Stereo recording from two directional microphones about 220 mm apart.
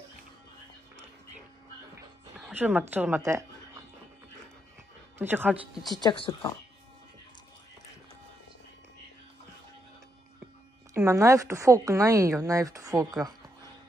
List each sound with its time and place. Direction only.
2.3 s a woman's voice: 10° right (ahead or behind)
5.2 s speech: 10° right (ahead or behind)
6.0 s speech: 25° left (ahead or behind)
11.0 s speech: 15° right (ahead or behind)